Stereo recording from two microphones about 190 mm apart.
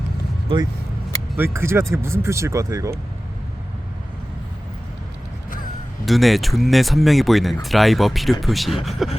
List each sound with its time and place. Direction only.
0.4 s speech: 25° right (ahead or behind)
1.5 s speech: 15° right (ahead or behind)
6.1 s speech: centre (ahead or behind)